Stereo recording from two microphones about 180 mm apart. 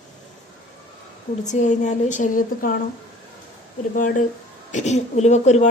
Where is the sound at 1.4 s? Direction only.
40° left (ahead or behind).